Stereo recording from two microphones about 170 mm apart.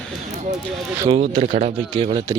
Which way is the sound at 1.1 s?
30° right (ahead or behind).